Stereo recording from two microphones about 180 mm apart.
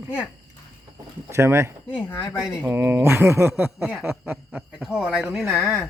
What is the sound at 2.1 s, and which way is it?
Speech, 10° left (ahead or behind).